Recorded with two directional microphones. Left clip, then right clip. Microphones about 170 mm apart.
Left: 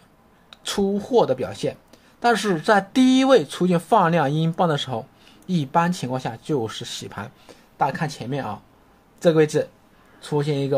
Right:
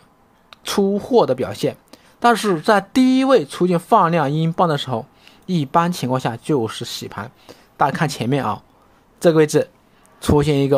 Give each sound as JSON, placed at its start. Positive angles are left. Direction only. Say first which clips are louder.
{"t": 0.5, "sound": "a woman's voice", "louder": "right 5 dB", "side_deg": -25}
{"t": 7.7, "sound": "a woman's voice", "louder": "right 5 dB", "side_deg": -35}